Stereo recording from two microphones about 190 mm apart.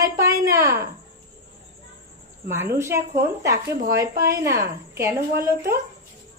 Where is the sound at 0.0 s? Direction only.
15° right (ahead or behind).